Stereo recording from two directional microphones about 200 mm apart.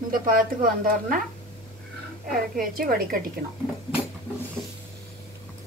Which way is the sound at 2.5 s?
45° right (ahead or behind).